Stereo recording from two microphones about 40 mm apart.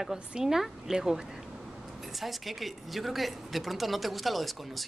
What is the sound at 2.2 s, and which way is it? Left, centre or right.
A woman's voice, centre.